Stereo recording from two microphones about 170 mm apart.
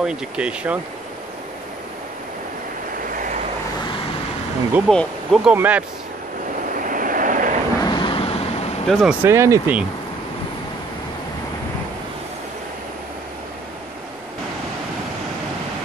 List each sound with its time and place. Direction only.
0.0 s speech: 5° right (ahead or behind)
3.1 s vehicle: 50° right (ahead or behind)
4.7 s speech: centre (ahead or behind)
6.7 s vehicle: 50° right (ahead or behind)
7.8 s vehicle: 25° left (ahead or behind)
8.8 s speech: centre (ahead or behind)
9.2 s speech: 15° right (ahead or behind)